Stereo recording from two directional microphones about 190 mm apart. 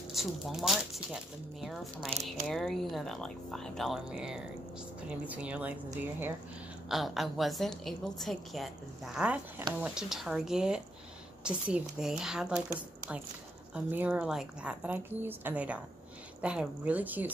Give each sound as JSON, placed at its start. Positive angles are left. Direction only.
{"t": 0.1, "sound": "a woman's voice", "side_deg": 0}